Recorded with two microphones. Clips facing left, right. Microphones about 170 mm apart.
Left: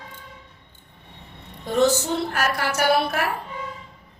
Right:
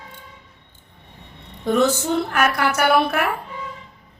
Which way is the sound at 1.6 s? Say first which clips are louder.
Right 1 dB; 60° right (ahead or behind).